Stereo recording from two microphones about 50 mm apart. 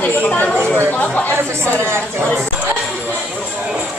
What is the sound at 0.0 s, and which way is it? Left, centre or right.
Speech, left.